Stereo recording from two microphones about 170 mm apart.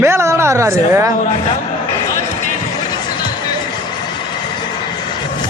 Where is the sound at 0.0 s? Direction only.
15° right (ahead or behind).